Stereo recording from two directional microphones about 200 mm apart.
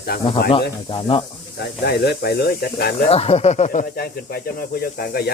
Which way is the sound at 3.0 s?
30° left (ahead or behind).